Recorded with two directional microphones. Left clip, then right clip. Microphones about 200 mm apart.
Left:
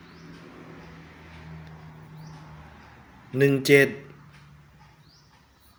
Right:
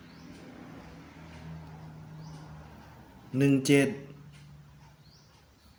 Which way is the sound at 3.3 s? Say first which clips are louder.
Left 6 dB; 20° left (ahead or behind).